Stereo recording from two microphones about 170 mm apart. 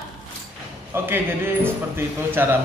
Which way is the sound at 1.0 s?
15° right (ahead or behind).